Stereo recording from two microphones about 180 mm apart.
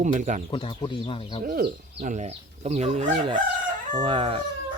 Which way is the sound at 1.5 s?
55° right (ahead or behind).